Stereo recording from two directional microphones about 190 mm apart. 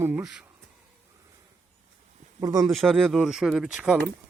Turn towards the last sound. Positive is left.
turn(degrees=-5)  # may be behind; listen again after turning